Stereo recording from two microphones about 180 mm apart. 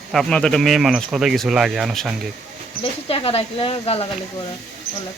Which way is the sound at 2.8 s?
30° left (ahead or behind).